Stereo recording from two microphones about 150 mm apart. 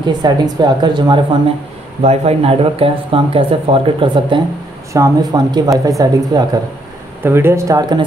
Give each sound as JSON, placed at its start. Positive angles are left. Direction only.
{"t": 0.0, "sound": "speech", "side_deg": -30}
{"t": 2.0, "sound": "speech", "side_deg": -45}
{"t": 4.9, "sound": "speech", "side_deg": -20}